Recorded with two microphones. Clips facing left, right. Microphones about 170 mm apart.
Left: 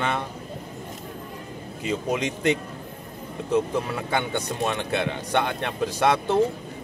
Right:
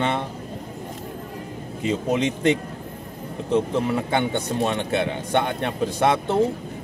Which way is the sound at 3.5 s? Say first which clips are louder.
Right 3 dB; 25° right (ahead or behind).